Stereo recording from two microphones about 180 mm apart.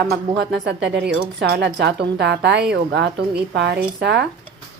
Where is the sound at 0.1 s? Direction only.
65° right (ahead or behind).